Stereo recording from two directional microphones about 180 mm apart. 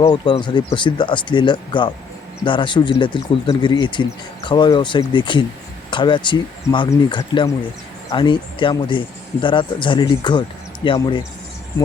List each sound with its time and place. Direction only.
0.0 s speech: 25° left (ahead or behind)